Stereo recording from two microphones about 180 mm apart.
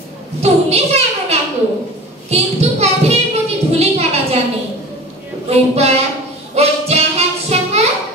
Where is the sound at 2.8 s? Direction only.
35° right (ahead or behind).